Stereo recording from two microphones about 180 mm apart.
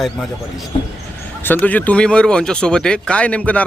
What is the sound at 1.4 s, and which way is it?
Speech, 10° left (ahead or behind).